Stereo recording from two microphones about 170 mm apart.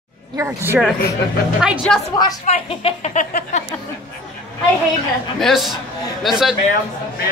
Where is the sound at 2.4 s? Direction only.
40° left (ahead or behind).